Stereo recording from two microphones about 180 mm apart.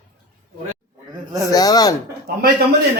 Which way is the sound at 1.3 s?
20° right (ahead or behind).